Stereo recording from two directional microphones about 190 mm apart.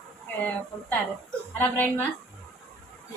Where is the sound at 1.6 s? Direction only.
10° left (ahead or behind).